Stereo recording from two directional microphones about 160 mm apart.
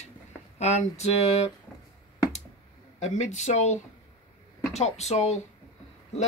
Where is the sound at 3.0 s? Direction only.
45° left (ahead or behind).